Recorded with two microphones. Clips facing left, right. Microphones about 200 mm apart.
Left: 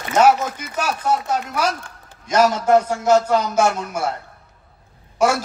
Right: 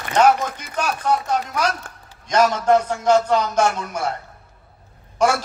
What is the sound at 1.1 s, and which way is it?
Speech, 5° left (ahead or behind).